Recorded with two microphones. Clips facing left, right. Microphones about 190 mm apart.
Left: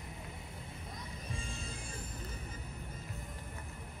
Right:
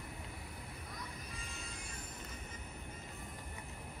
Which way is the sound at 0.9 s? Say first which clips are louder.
Left 5 dB; 30° left (ahead or behind).